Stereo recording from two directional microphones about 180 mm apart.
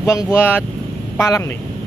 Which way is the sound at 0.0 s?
15° left (ahead or behind).